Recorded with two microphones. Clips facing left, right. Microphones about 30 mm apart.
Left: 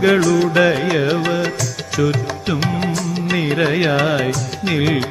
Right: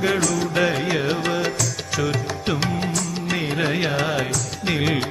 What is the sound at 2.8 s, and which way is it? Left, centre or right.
Music, centre.